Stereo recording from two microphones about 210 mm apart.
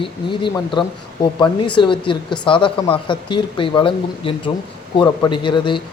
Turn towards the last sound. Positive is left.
turn(degrees=20)  # may be behind; listen again after turning